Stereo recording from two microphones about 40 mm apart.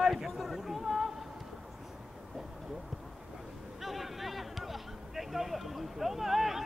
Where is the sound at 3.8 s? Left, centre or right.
Centre.